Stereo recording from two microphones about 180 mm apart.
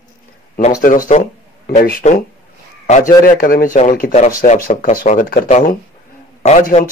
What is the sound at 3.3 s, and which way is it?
Speech, 55° left (ahead or behind).